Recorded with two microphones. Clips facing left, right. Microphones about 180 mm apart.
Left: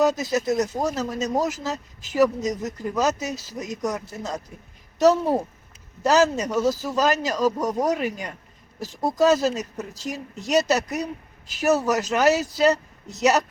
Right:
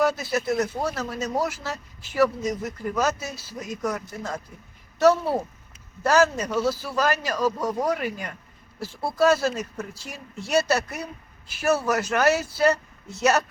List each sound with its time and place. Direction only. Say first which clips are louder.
0.0 s speech: left 2 dB; 20° left (ahead or behind)
3.3 s speech: left 4 dB; 40° left (ahead or behind)
3.6 s speech: even; 20° left (ahead or behind)
8.8 s speech: left 4 dB; 40° left (ahead or behind)
9.1 s speech: left 1 dB; 20° left (ahead or behind)